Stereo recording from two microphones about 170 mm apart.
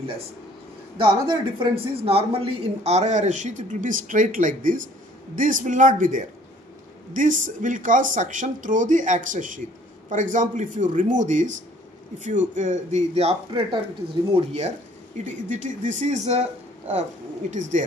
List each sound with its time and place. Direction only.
0.9 s speech: 30° right (ahead or behind)
15.2 s speech: 45° right (ahead or behind)